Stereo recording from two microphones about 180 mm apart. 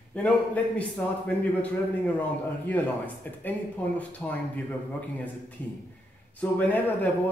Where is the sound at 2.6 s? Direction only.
10° left (ahead or behind).